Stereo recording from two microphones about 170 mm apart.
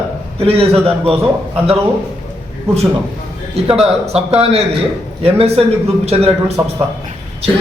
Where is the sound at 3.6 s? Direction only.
35° right (ahead or behind).